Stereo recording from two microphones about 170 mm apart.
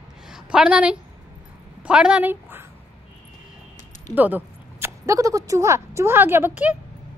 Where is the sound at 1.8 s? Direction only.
5° right (ahead or behind).